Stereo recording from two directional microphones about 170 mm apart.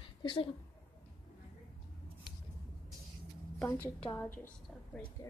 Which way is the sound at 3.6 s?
10° left (ahead or behind).